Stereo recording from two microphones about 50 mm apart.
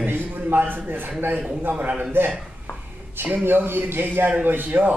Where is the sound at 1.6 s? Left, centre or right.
Right.